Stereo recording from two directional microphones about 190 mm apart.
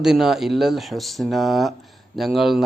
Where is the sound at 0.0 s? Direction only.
Centre (ahead or behind).